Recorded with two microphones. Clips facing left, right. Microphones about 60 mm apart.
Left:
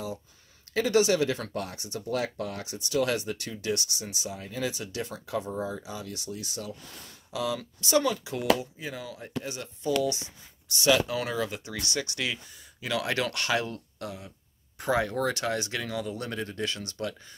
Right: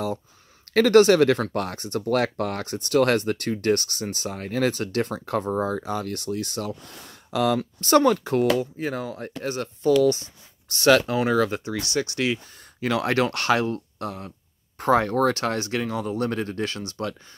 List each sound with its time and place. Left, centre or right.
0.7 s speech: right
11.1 s speech: right
11.3 s speech: right
11.6 s speech: right